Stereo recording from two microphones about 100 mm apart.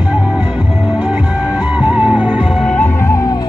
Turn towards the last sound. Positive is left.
turn(degrees=35)  # may be behind; listen again after turning